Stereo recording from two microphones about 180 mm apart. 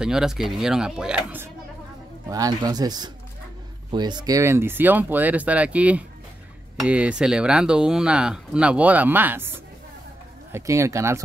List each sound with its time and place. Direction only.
0.0 s speech: 5° right (ahead or behind)
2.2 s speech: 20° right (ahead or behind)